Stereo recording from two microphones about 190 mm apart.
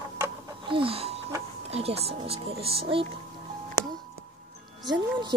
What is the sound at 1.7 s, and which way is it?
Speech, 30° right (ahead or behind).